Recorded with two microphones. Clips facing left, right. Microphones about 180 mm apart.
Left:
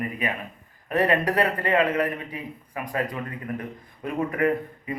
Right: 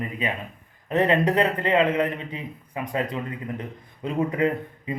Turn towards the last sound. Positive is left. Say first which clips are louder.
# left 1 dB
turn(degrees=-20)  # may be behind; listen again after turning